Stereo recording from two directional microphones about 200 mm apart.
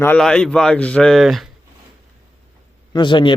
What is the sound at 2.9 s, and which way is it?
Speech, 25° left (ahead or behind).